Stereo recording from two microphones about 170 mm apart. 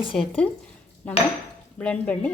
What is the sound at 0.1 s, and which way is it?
Speech, 5° left (ahead or behind).